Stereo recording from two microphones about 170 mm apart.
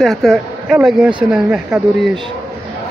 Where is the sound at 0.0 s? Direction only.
Centre (ahead or behind).